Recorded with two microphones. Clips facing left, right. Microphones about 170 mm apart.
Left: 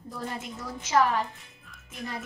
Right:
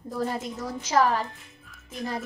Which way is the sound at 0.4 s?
40° right (ahead or behind).